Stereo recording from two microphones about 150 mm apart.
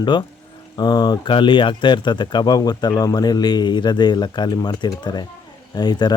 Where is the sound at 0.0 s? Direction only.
30° left (ahead or behind).